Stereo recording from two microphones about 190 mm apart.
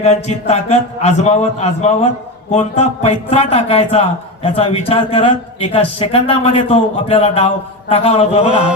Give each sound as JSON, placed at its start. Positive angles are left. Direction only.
{"t": 0.0, "sound": "speech", "side_deg": 35}